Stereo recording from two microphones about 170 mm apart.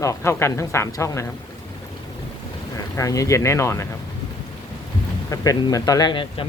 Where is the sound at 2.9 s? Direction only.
20° left (ahead or behind).